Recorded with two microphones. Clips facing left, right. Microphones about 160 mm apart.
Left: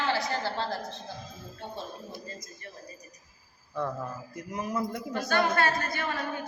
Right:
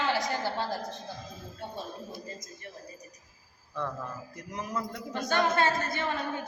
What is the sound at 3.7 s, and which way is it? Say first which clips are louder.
A man's voice: left 3 dB; 10° left (ahead or behind).